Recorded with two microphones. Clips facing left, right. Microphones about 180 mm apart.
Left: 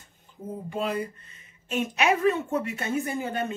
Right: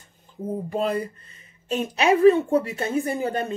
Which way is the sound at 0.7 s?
40° right (ahead or behind).